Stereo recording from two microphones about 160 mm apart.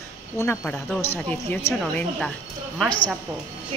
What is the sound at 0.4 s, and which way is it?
A woman's voice, 15° left (ahead or behind).